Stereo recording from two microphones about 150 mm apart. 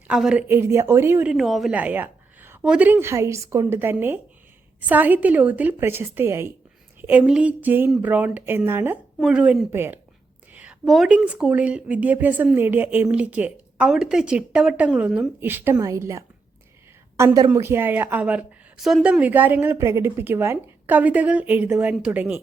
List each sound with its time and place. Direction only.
0.1 s speech: 5° right (ahead or behind)
0.4 s a woman's voice: 15° right (ahead or behind)
1.3 s a woman's voice: centre (ahead or behind)
10.5 s a sound: 10° right (ahead or behind)
10.8 s a woman's voice: centre (ahead or behind)